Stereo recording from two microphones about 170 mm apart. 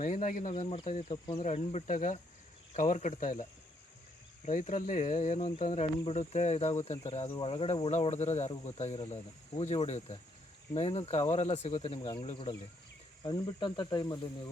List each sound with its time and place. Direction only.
0.0 s speech: 50° left (ahead or behind)
4.4 s speech: 45° left (ahead or behind); by 14.5 s 25° left (ahead or behind)